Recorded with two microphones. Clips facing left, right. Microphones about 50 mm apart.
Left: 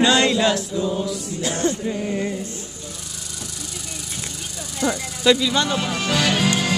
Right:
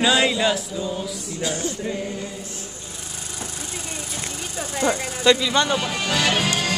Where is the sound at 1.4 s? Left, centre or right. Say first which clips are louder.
Even; left.